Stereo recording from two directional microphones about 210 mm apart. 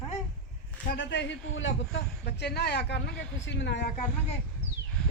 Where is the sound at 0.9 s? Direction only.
55° left (ahead or behind).